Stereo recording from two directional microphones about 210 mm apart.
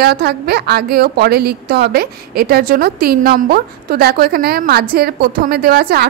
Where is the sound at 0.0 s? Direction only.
50° right (ahead or behind).